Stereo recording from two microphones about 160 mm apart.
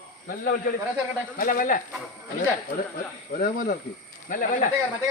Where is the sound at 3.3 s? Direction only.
60° left (ahead or behind).